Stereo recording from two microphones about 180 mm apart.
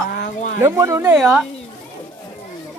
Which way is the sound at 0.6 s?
15° right (ahead or behind).